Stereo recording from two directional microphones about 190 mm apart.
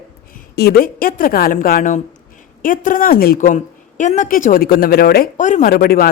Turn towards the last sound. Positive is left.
turn(degrees=50)  # may be behind; listen again after turning